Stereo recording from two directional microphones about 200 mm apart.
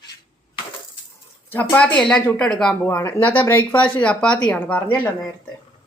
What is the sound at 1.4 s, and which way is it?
Speech, 10° left (ahead or behind).